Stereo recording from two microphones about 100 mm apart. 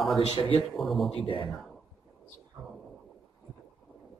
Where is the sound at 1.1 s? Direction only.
60° left (ahead or behind).